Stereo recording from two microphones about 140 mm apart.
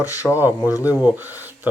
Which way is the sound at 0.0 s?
25° left (ahead or behind).